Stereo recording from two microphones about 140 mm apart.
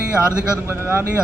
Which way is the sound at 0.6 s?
20° right (ahead or behind).